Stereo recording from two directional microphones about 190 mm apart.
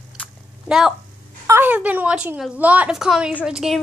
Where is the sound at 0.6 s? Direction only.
Centre (ahead or behind).